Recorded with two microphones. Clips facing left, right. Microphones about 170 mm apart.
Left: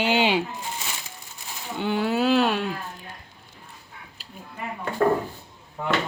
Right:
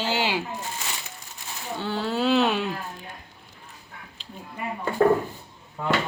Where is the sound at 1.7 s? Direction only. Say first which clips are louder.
Left 3 dB; 15° left (ahead or behind); by 2.7 s centre (ahead or behind).